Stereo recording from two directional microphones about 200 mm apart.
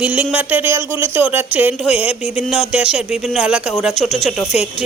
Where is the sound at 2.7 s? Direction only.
5° right (ahead or behind).